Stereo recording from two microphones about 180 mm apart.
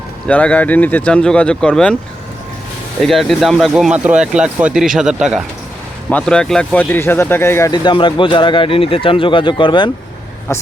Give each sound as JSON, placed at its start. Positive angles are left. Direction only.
{"t": 0.3, "sound": "speech", "side_deg": 10}
{"t": 3.0, "sound": "speech", "side_deg": 0}
{"t": 7.7, "sound": "speech", "side_deg": 25}
{"t": 10.5, "sound": "speech", "side_deg": 15}